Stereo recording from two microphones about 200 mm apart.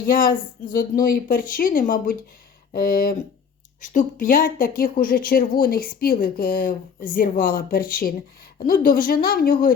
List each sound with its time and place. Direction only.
0.0 s speech: 45° left (ahead or behind)